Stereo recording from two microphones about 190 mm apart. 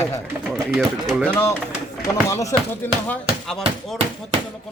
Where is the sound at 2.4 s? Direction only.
15° left (ahead or behind).